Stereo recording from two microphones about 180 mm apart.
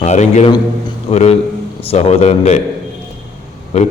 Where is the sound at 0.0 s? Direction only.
40° left (ahead or behind).